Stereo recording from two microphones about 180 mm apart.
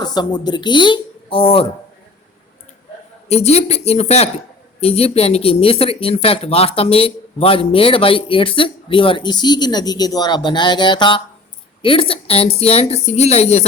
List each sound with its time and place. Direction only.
0.0 s speech: 25° left (ahead or behind)
3.2 s speech: 35° left (ahead or behind)